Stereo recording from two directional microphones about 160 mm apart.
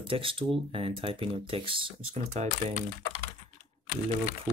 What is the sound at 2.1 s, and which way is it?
Speech, 45° right (ahead or behind).